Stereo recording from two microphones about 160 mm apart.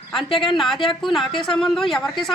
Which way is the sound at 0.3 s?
35° left (ahead or behind).